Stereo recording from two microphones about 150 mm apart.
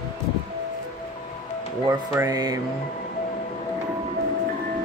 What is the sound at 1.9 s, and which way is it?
Speech, 20° right (ahead or behind).